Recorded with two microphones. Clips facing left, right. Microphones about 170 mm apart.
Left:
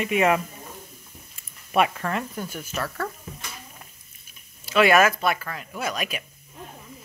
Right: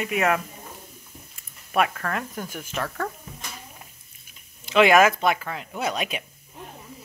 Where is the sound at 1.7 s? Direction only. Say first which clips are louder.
Left 1 dB; 5° left (ahead or behind).